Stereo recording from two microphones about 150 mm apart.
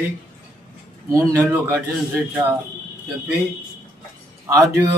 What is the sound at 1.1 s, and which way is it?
Speech, 15° right (ahead or behind).